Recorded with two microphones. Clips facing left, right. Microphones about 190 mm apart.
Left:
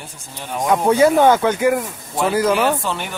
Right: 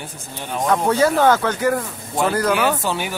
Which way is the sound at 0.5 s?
15° left (ahead or behind).